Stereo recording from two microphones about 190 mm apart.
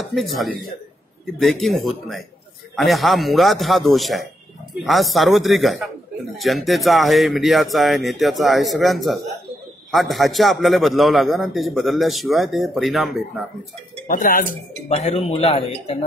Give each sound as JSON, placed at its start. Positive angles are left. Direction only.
{"t": 0.0, "sound": "a man's voice", "side_deg": 0}
{"t": 14.0, "sound": "a man's voice", "side_deg": 45}
{"t": 15.0, "sound": "speech", "side_deg": 35}